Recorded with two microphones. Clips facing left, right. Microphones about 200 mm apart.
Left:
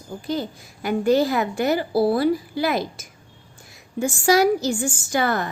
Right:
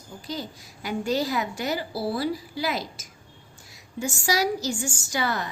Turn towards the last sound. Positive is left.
turn(degrees=50)  # may be behind; listen again after turning